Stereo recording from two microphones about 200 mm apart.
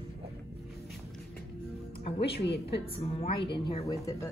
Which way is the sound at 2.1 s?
55° left (ahead or behind).